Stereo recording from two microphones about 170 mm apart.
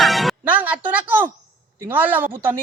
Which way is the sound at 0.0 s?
Centre (ahead or behind).